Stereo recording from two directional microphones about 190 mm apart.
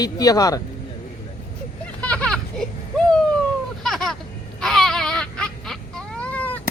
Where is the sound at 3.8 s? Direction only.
Centre (ahead or behind).